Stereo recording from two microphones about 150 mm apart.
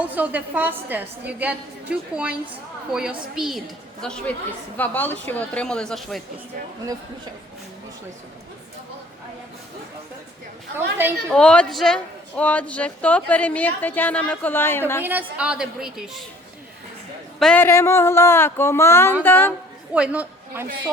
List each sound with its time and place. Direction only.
0.1 s a woman's voice: 10° right (ahead or behind)
10.8 s a woman's voice: 15° right (ahead or behind)
11.3 s a woman's voice: 5° left (ahead or behind)
15.0 s a woman's voice: 10° right (ahead or behind)
17.4 s a woman's voice: 10° left (ahead or behind)
19.9 s a woman's voice: 10° right (ahead or behind)